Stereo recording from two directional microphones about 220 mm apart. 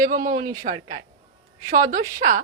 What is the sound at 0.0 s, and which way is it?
A woman's voice, 40° right (ahead or behind).